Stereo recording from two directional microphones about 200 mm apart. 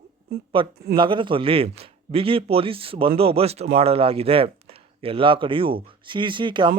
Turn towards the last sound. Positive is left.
turn(degrees=-25)  # may be behind; listen again after turning